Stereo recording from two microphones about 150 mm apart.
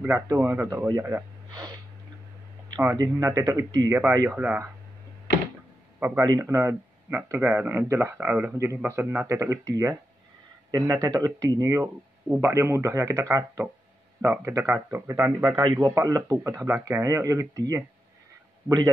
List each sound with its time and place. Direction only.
0.0 s speech: 15° right (ahead or behind)
2.7 s speech: 20° right (ahead or behind)
5.9 s a man's voice: 15° right (ahead or behind)
15.6 s speech: 30° right (ahead or behind)